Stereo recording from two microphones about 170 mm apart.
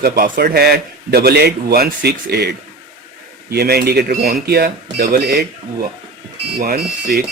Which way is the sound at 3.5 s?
70° right (ahead or behind).